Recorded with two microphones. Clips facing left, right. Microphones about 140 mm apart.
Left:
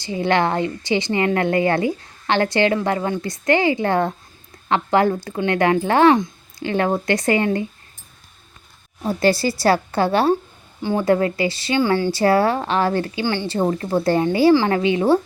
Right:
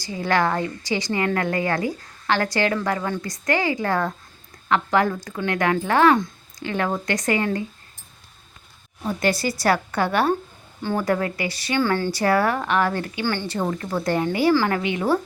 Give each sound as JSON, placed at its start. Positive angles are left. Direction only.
{"t": 0.0, "sound": "a woman's voice", "side_deg": 25}
{"t": 9.0, "sound": "a woman's voice", "side_deg": 30}
{"t": 11.8, "sound": "speech", "side_deg": 15}
{"t": 12.1, "sound": "a woman's voice", "side_deg": 30}
{"t": 13.2, "sound": "speech", "side_deg": 15}
{"t": 13.5, "sound": "a woman's voice", "side_deg": 30}